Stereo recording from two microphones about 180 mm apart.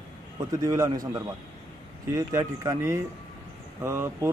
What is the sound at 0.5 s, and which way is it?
A man's voice, 20° right (ahead or behind).